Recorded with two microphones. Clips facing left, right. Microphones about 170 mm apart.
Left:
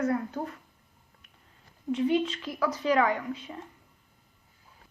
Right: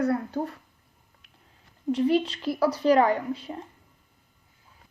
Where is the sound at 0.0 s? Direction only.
35° right (ahead or behind).